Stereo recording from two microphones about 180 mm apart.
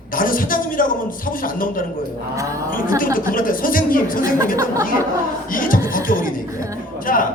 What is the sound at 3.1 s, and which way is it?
Speech, 50° left (ahead or behind).